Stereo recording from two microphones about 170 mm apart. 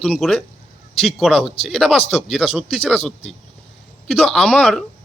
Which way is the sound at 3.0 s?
35° left (ahead or behind).